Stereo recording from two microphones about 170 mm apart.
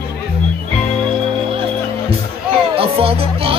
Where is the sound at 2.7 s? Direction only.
35° right (ahead or behind).